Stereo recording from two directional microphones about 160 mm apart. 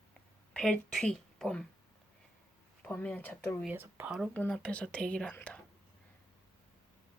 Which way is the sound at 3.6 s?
10° right (ahead or behind).